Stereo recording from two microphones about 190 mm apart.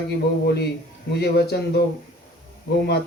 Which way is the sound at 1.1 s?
60° left (ahead or behind).